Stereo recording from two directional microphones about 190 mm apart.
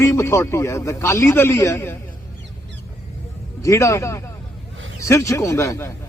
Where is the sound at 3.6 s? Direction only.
15° left (ahead or behind).